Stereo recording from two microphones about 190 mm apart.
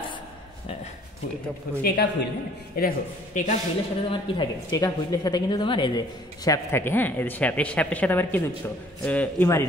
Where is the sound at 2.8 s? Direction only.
50° left (ahead or behind).